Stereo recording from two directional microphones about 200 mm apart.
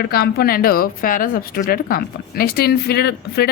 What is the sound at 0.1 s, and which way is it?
Speech, 50° left (ahead or behind).